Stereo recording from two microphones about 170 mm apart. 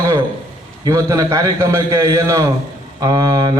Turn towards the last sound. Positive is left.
turn(degrees=-20)  # may be behind; listen again after turning